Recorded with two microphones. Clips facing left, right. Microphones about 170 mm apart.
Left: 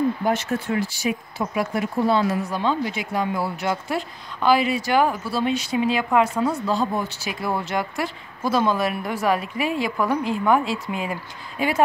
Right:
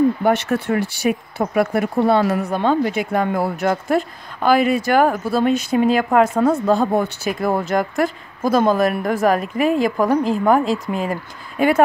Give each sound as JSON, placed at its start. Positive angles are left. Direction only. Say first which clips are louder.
{"t": 0.2, "sound": "speech", "louder": "right 5 dB", "side_deg": -65}